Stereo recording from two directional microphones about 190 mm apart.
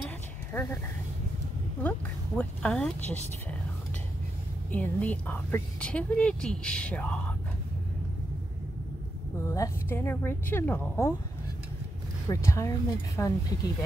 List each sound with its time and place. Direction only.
0.5 s a woman's voice: 10° left (ahead or behind)
1.8 s speech: 5° left (ahead or behind)
4.6 s a woman's voice: 10° left (ahead or behind)
9.5 s a woman's voice: 15° left (ahead or behind)
12.3 s a woman's voice: 15° left (ahead or behind)